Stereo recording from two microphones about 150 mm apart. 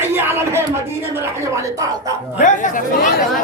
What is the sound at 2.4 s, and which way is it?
Speech, 60° left (ahead or behind).